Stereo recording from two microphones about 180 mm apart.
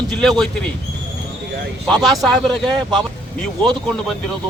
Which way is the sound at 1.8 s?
Centre (ahead or behind).